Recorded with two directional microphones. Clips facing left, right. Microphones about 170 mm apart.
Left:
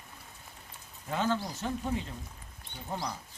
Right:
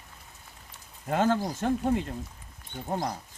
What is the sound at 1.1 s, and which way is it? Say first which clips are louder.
Speech: right 6 dB; 50° right (ahead or behind).